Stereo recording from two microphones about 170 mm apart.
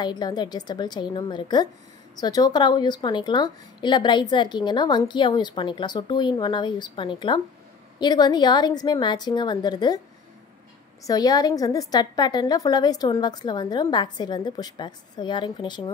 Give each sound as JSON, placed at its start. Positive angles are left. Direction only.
{"t": 0.0, "sound": "a woman's voice", "side_deg": 25}
{"t": 11.1, "sound": "a woman's voice", "side_deg": 20}